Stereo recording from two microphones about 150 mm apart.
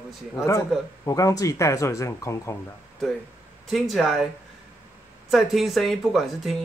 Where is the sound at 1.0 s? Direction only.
20° left (ahead or behind).